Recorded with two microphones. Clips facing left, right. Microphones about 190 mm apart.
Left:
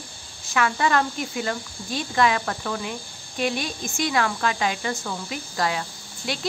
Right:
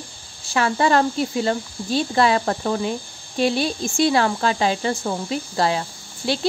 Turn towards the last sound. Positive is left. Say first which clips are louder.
# right 7 dB
turn(degrees=-30)  # may be behind; listen again after turning